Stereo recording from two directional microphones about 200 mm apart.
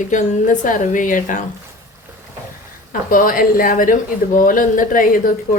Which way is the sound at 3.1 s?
45° left (ahead or behind).